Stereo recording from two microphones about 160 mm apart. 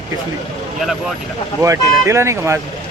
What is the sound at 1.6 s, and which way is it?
Speech, 20° right (ahead or behind).